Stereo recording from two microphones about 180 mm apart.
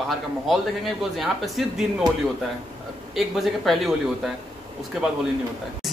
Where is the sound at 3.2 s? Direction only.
Centre (ahead or behind).